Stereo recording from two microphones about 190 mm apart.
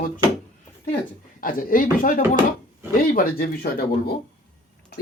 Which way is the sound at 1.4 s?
45° left (ahead or behind).